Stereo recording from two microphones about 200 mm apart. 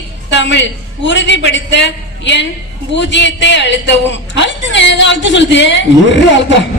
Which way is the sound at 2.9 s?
65° left (ahead or behind).